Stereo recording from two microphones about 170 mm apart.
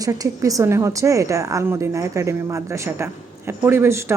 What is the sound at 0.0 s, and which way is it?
A woman's voice, 20° right (ahead or behind).